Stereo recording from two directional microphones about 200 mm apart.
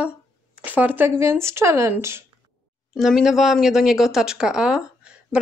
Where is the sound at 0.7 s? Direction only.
10° right (ahead or behind).